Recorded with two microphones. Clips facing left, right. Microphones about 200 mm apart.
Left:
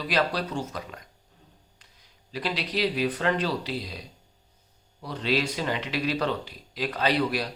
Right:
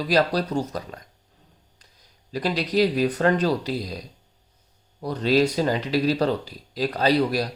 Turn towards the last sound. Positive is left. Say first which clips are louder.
# right 5 dB
turn(degrees=-40)  # may be behind; listen again after turning